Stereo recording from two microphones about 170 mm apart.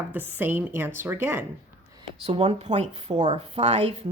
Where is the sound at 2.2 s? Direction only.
40° right (ahead or behind).